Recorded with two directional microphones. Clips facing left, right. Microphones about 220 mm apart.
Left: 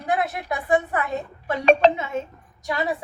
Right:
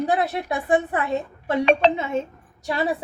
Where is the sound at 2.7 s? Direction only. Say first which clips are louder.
Right 2 dB; 30° right (ahead or behind).